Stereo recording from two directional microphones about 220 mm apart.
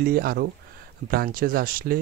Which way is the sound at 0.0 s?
45° right (ahead or behind).